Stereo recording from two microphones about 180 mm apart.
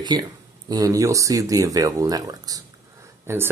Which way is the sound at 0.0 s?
25° right (ahead or behind).